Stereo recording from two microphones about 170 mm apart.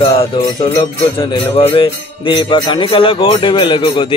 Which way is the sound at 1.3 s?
30° left (ahead or behind).